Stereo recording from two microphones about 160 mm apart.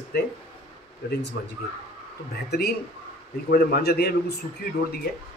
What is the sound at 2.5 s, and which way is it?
A man's voice, 80° left.